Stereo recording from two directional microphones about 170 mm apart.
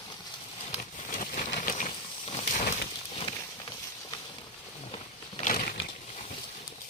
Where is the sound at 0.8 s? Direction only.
55° left (ahead or behind).